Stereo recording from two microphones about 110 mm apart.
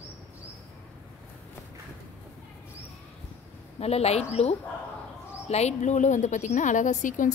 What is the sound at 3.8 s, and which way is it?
A woman's voice, 70° left (ahead or behind).